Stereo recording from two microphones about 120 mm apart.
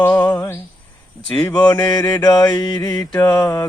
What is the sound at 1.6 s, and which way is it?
Mantra, 35° left (ahead or behind).